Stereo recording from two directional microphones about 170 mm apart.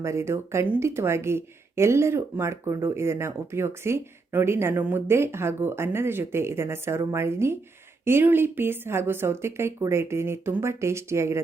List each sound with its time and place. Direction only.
0.0 s speech: 15° right (ahead or behind)